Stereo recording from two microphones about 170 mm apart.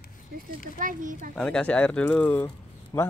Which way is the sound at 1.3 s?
5° left (ahead or behind).